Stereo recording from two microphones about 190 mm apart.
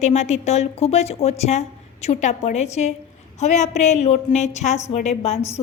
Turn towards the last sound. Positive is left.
turn(degrees=35)  # may be behind; listen again after turning